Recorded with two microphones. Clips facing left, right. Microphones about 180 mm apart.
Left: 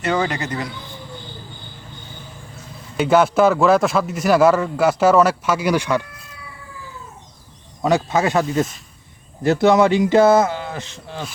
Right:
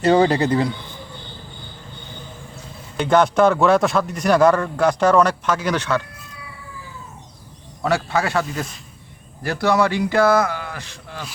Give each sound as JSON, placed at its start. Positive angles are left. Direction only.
{"t": 0.0, "sound": "speech", "side_deg": -35}
{"t": 3.0, "sound": "a man's voice", "side_deg": 5}
{"t": 7.8, "sound": "speech", "side_deg": 20}